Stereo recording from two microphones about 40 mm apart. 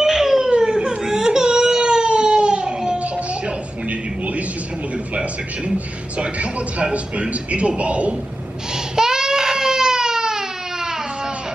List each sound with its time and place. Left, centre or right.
0.0 s a sound: centre
0.6 s baby cry: centre
6.1 s a man's voice: right
8.9 s baby cry: centre